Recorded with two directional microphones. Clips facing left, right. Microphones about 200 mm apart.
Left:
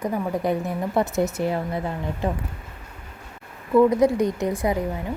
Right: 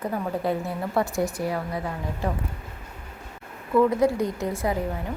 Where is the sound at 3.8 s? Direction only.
20° left (ahead or behind).